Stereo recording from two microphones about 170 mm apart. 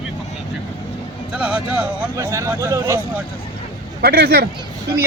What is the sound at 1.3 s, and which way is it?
Speech, 5° right (ahead or behind).